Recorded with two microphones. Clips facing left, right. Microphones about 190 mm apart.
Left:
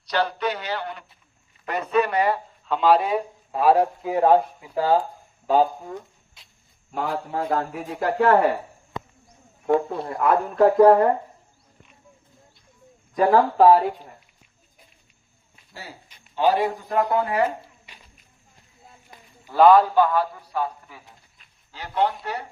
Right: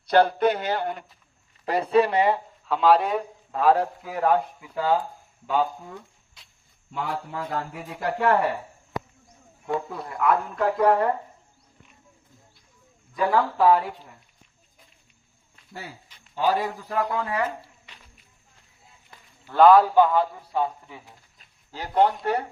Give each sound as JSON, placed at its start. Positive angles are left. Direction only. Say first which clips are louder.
{"t": 0.1, "sound": "speech", "louder": "right 5 dB", "side_deg": -50}
{"t": 1.6, "sound": "speech", "louder": "right 2 dB", "side_deg": -30}
{"t": 2.6, "sound": "a man's voice", "louder": "left 1 dB", "side_deg": 0}
{"t": 4.1, "sound": "a man's voice", "louder": "left 5 dB", "side_deg": 25}
{"t": 9.9, "sound": "speech", "louder": "left 2 dB", "side_deg": 30}
{"t": 13.1, "sound": "speech", "louder": "left 5 dB", "side_deg": 40}
{"t": 16.6, "sound": "speech", "louder": "left 4 dB", "side_deg": 30}
{"t": 17.9, "sound": "a sound", "louder": "left 1 dB", "side_deg": 10}
{"t": 19.1, "sound": "a sound", "louder": "left 1 dB", "side_deg": 15}
{"t": 19.5, "sound": "a man's voice", "louder": "even", "side_deg": 0}
{"t": 20.0, "sound": "a man's voice", "louder": "right 1 dB", "side_deg": -20}
{"t": 21.3, "sound": "speech", "louder": "right 4 dB", "side_deg": -40}